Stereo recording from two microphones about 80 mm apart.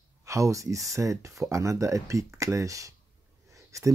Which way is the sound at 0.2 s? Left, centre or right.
Right.